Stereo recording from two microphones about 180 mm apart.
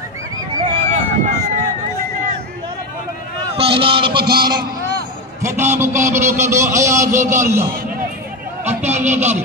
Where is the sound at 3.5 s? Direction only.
30° right (ahead or behind).